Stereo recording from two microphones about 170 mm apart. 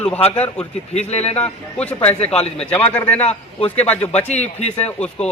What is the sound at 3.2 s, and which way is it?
Speech, 40° left (ahead or behind).